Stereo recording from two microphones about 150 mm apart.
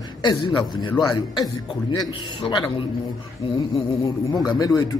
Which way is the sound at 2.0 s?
30° left (ahead or behind).